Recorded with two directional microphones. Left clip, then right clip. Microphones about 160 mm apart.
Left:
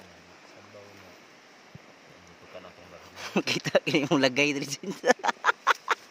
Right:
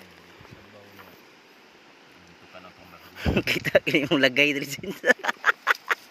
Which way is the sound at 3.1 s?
20° left (ahead or behind).